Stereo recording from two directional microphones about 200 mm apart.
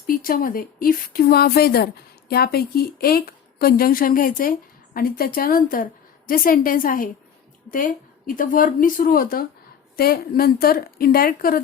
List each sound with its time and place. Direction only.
0.1 s a woman's voice: 45° left (ahead or behind)